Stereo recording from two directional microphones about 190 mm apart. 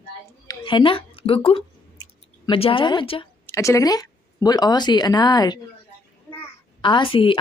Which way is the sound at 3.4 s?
15° left (ahead or behind).